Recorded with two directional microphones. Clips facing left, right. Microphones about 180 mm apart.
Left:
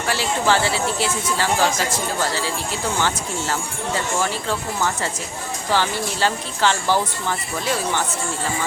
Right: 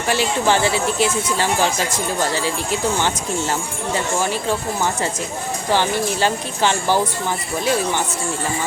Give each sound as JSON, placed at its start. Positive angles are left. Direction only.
{"t": 0.1, "sound": "speech", "side_deg": -20}
{"t": 3.9, "sound": "speech", "side_deg": -15}